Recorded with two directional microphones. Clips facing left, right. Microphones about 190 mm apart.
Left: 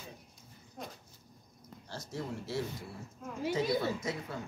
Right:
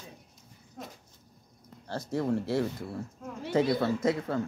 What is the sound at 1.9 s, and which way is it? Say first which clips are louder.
Speech: right 10 dB; 60° right (ahead or behind).